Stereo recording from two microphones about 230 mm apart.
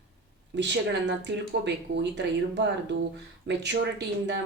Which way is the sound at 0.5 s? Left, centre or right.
Right.